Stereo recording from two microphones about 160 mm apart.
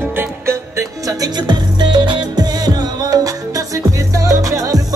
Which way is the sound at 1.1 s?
25° right (ahead or behind).